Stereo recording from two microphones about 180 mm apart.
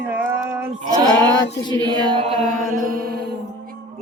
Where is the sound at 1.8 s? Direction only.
25° right (ahead or behind).